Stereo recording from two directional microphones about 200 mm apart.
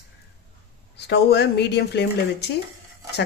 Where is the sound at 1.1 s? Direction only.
55° left (ahead or behind).